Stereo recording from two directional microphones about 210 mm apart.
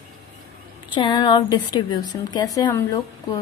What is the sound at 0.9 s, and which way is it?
A woman's voice, 20° left (ahead or behind).